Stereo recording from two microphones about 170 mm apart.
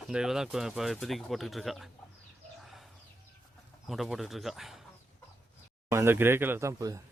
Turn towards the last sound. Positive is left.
turn(degrees=-20)  # may be behind; listen again after turning